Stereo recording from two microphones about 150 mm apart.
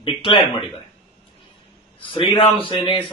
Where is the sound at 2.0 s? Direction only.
35° left (ahead or behind).